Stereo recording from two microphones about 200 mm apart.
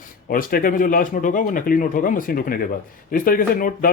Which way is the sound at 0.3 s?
45° left (ahead or behind).